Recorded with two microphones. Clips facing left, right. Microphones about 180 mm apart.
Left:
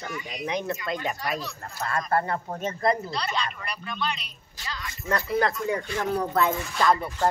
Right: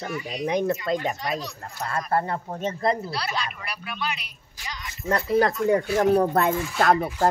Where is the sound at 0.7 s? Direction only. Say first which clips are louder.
Right 4 dB; 30° right (ahead or behind).